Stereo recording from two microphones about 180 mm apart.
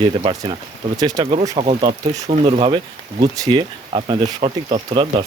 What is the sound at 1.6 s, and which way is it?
Speech, 35° right (ahead or behind).